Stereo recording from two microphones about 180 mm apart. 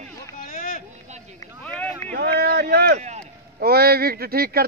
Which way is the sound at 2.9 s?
40° right (ahead or behind).